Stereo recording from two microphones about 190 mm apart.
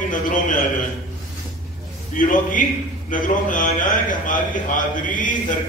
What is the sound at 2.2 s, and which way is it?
A man's voice, 45° left (ahead or behind).